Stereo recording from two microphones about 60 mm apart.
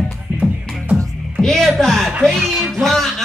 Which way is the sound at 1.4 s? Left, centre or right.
Centre.